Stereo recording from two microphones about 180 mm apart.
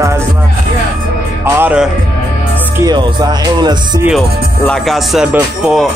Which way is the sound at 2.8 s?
25° right (ahead or behind).